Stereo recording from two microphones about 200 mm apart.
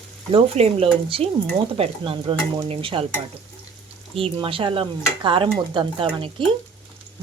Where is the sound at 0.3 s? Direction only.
30° right (ahead or behind).